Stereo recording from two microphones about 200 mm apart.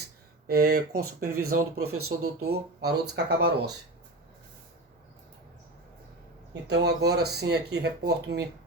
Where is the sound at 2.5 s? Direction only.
55° right (ahead or behind).